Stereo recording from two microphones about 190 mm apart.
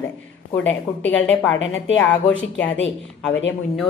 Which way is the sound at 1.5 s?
85° left.